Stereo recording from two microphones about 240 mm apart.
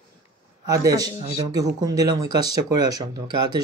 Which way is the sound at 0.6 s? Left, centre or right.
Centre.